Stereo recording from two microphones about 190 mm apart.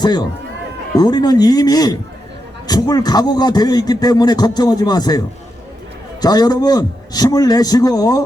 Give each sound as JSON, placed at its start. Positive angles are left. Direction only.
{"t": 0.0, "sound": "a man's voice", "side_deg": 20}
{"t": 6.2, "sound": "a man's voice", "side_deg": 20}